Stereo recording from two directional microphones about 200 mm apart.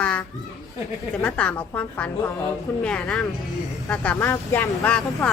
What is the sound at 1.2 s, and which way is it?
A woman's voice, 5° left (ahead or behind).